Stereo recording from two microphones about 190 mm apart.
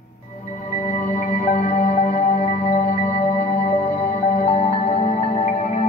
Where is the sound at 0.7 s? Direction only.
40° left (ahead or behind).